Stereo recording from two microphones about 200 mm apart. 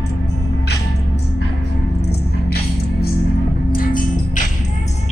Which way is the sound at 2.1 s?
50° left (ahead or behind).